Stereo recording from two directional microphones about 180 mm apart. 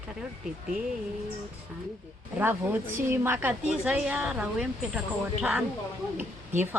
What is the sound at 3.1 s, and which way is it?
A woman's voice, 10° right (ahead or behind).